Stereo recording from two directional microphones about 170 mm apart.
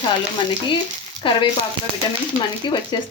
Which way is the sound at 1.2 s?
90° right.